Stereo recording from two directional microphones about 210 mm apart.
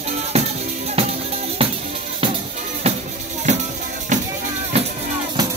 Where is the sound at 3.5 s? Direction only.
35° right (ahead or behind).